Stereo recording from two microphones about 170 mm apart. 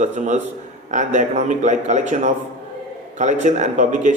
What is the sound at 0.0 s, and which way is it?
A man's voice, 45° right (ahead or behind).